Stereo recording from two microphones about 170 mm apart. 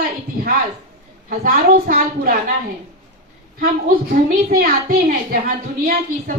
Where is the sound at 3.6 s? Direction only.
60° right (ahead or behind).